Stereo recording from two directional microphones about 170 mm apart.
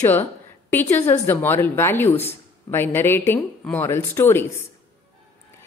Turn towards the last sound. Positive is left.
turn(degrees=15)  # may be behind; listen again after turning